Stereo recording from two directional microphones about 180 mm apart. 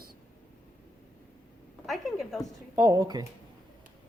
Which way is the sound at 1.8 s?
Centre (ahead or behind).